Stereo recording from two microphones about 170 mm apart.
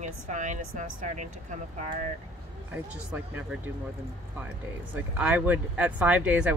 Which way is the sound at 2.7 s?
10° right (ahead or behind).